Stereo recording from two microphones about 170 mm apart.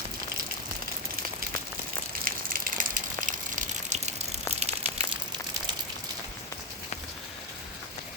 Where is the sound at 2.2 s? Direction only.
55° right (ahead or behind); by 5.0 s 35° right (ahead or behind).